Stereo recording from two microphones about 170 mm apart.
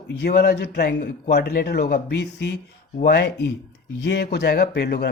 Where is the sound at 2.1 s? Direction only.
90° left.